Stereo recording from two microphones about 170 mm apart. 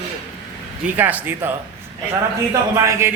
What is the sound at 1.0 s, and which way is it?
Speech, 10° right (ahead or behind).